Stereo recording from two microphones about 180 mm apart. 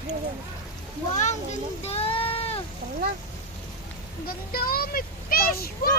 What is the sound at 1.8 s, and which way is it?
Sheep, 35° left (ahead or behind).